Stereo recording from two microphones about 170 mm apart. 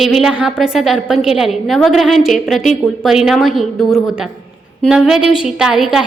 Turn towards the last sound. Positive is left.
turn(degrees=-5)  # may be behind; listen again after turning